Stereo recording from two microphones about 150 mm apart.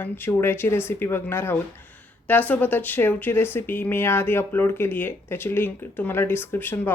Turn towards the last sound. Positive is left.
turn(degrees=15)  # may be behind; listen again after turning